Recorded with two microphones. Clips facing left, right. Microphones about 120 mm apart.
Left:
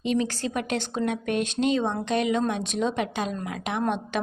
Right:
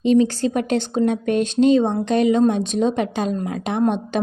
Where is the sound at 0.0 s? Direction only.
35° right (ahead or behind).